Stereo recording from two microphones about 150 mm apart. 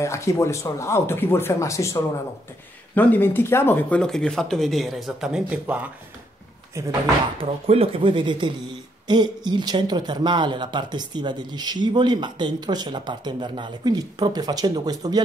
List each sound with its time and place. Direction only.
0.0 s speech: 20° left (ahead or behind); by 5.8 s 5° right (ahead or behind)
7.3 s speech: 40° right (ahead or behind)